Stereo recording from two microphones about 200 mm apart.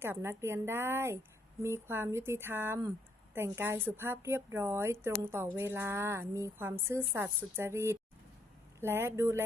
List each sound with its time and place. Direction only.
0.0 s a woman's voice: 10° right (ahead or behind)